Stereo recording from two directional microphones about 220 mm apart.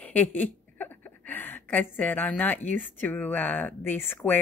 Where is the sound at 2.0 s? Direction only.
10° left (ahead or behind).